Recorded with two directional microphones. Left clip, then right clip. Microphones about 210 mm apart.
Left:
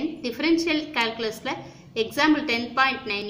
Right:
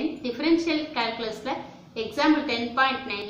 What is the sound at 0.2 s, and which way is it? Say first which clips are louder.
A woman's voice: left 1 dB; 50° left (ahead or behind).